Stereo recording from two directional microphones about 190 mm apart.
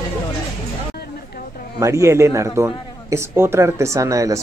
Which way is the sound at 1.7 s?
15° right (ahead or behind).